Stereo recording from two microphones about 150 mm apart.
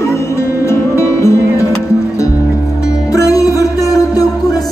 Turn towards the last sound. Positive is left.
turn(degrees=25)  # may be behind; listen again after turning